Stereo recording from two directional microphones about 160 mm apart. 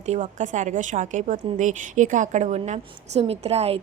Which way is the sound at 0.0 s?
45° right (ahead or behind).